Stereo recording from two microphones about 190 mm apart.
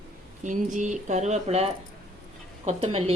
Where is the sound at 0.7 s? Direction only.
40° right (ahead or behind).